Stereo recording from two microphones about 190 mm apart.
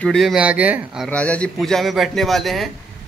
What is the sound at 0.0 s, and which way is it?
Speech, centre (ahead or behind).